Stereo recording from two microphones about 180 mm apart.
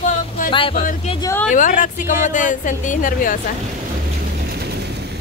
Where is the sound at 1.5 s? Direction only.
45° left (ahead or behind).